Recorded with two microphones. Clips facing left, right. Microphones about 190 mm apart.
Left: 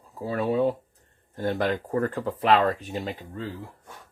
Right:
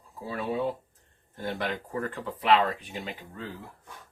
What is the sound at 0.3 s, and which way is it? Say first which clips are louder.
Speech: left 6 dB; 45° left (ahead or behind).